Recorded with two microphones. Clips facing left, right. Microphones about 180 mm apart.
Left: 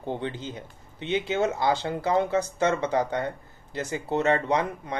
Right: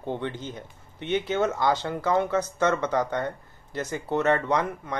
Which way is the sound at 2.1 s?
15° left (ahead or behind).